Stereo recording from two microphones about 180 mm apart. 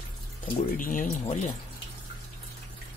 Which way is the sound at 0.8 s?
50° left (ahead or behind).